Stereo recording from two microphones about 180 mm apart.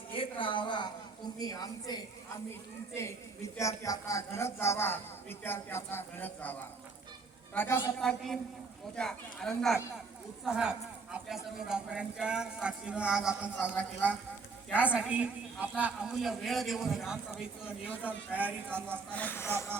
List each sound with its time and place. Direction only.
0.1 s a sound: 30° left (ahead or behind)
1.4 s a woman's voice: 20° left (ahead or behind)
3.6 s a man's voice: 15° left (ahead or behind); by 13.5 s 5° right (ahead or behind)
14.8 s a woman's voice: 5° right (ahead or behind)
19.1 s a man's voice: 10° left (ahead or behind)